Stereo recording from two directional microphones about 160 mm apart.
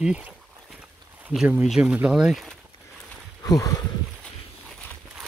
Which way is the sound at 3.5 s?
20° left (ahead or behind).